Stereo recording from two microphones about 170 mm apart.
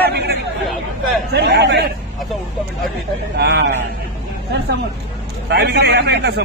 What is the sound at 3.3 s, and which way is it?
Speech, 80° right.